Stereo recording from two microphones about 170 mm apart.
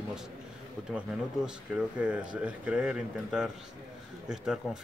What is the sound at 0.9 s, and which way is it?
Speech, 5° right (ahead or behind).